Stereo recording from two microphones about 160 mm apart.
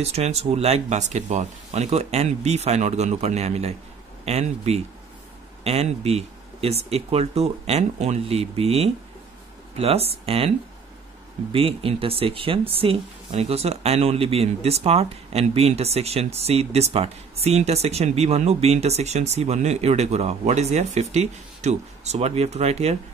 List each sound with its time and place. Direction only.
0.0 s speech: 40° right (ahead or behind)
11.5 s speech: 35° right (ahead or behind)